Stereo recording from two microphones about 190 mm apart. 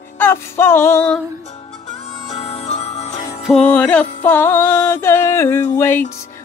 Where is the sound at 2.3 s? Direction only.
35° left (ahead or behind).